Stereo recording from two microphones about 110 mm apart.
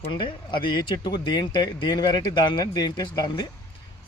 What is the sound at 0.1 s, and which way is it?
Speech, 50° left (ahead or behind).